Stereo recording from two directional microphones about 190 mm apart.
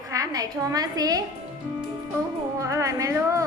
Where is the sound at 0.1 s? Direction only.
15° right (ahead or behind).